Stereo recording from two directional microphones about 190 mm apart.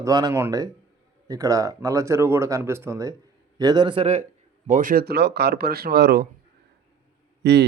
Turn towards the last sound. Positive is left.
turn(degrees=-65)  # may be behind; listen again after turning